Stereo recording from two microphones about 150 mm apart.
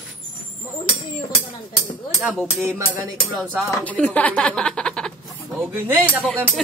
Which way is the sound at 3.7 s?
10° left (ahead or behind).